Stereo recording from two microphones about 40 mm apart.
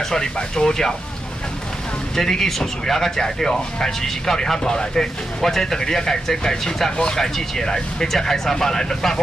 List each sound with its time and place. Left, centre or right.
0.0 s speech: centre
2.1 s speech: centre